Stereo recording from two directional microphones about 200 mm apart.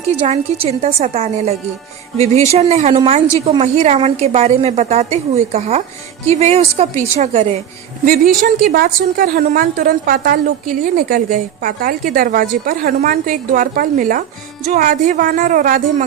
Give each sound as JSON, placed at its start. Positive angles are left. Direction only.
{"t": 0.3, "sound": "a woman's voice", "side_deg": -30}
{"t": 8.0, "sound": "a woman's voice", "side_deg": -45}